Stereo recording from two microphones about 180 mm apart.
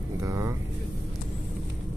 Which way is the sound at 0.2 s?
15° right (ahead or behind).